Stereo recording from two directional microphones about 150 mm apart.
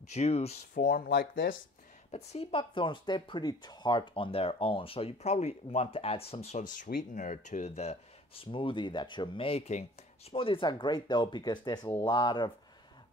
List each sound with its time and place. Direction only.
0.1 s speech: 45° left (ahead or behind)
0.7 s speech: 70° left (ahead or behind); by 1.5 s 90° left
2.0 s speech: 45° left (ahead or behind)
6.9 s speech: 60° left (ahead or behind); by 12.5 s 30° left (ahead or behind)